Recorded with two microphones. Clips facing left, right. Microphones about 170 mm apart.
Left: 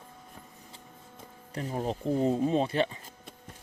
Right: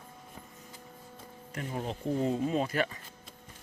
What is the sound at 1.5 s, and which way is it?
Speech, 35° left (ahead or behind).